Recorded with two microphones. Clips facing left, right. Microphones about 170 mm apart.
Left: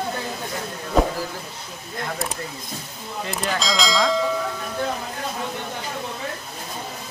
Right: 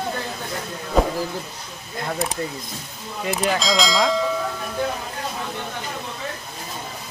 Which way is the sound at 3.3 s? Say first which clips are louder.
Right 4 dB; centre (ahead or behind).